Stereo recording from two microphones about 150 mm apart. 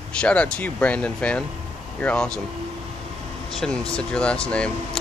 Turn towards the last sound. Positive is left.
turn(degrees=5)  # may be behind; listen again after turning